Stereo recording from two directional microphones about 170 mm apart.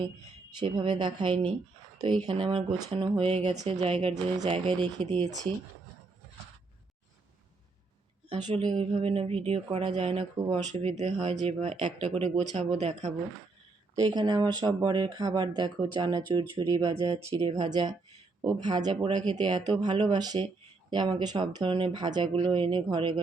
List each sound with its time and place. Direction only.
0.6 s speech: 30° right (ahead or behind)
8.6 s speech: 30° right (ahead or behind)
13.9 s speech: 25° right (ahead or behind)